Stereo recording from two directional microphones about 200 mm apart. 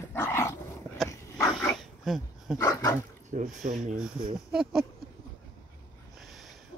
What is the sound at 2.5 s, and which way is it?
Dog, 15° left (ahead or behind).